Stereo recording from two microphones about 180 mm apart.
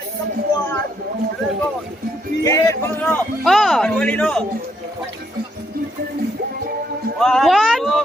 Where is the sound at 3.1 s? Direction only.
Centre (ahead or behind).